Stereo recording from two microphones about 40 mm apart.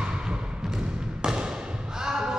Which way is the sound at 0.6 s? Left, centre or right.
Centre.